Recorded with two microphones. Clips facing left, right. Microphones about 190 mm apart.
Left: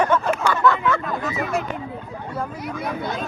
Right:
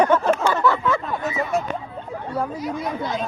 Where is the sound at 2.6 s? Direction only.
60° left (ahead or behind).